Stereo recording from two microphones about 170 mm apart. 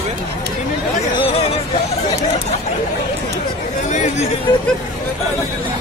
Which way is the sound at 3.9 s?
40° left (ahead or behind).